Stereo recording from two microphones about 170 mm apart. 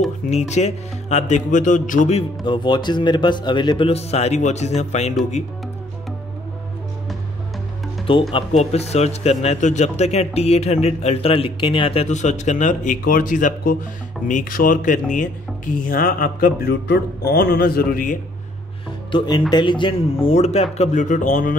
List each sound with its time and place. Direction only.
0.3 s a man's voice: 40° left (ahead or behind)
8.1 s a man's voice: 30° left (ahead or behind); by 18.1 s 60° left (ahead or behind)
19.1 s a man's voice: 25° left (ahead or behind); by 21.5 s 50° left (ahead or behind)